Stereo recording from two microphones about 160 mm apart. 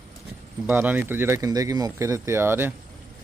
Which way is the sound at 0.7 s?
10° right (ahead or behind).